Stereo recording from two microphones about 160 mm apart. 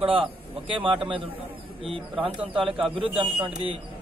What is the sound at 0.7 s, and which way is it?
Speech, 30° right (ahead or behind).